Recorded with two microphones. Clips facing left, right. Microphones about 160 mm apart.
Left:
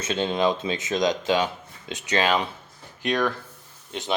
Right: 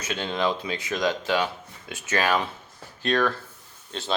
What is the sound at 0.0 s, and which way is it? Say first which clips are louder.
Speech: left 3 dB; 20° left (ahead or behind).